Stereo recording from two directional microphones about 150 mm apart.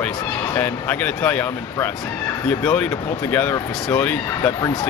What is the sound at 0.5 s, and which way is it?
Speech, 15° left (ahead or behind).